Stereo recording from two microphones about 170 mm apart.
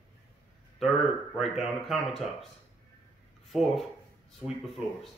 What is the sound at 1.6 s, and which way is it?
Speech, centre (ahead or behind).